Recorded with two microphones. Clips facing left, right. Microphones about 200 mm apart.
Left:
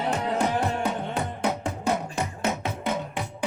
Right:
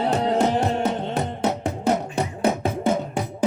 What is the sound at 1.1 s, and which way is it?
Music, 40° right (ahead or behind).